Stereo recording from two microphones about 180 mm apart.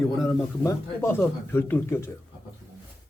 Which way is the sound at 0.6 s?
15° left (ahead or behind).